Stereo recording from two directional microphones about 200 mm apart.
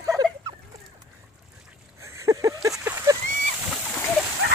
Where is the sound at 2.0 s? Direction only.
15° right (ahead or behind).